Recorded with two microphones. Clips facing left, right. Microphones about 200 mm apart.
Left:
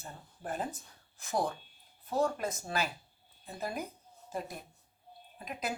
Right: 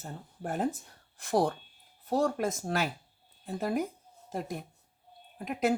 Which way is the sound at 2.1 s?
80° right.